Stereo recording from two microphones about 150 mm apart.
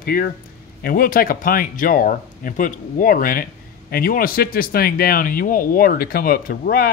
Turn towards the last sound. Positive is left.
turn(degrees=90)